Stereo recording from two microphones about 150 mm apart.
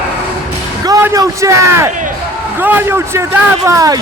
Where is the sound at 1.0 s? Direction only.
20° right (ahead or behind).